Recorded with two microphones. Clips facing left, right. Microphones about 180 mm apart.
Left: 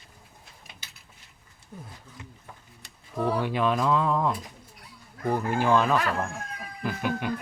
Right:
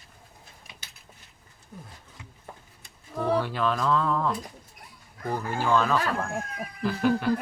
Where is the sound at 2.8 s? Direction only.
75° left (ahead or behind).